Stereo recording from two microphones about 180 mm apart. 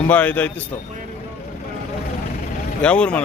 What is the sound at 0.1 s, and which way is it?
Speech, 10° left (ahead or behind).